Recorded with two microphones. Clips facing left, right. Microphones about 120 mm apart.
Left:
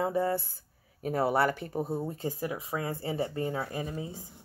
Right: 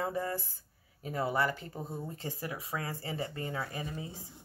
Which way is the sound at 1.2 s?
65° left (ahead or behind).